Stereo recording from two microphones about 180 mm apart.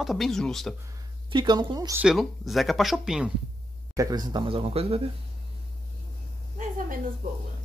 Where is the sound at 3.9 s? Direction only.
20° right (ahead or behind).